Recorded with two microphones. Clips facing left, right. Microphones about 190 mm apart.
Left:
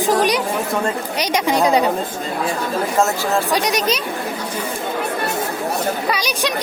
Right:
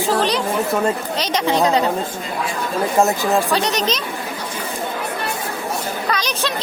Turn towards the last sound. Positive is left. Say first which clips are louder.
# left 1 dB
turn(degrees=10)  # may be behind; listen again after turning